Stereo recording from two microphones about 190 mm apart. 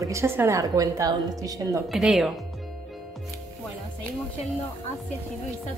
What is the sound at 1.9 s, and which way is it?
Speech, 5° right (ahead or behind).